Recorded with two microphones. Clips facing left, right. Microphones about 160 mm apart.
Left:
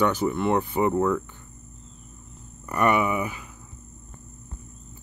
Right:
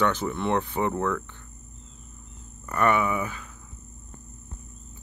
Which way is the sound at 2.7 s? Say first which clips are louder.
Left 1 dB; 15° left (ahead or behind).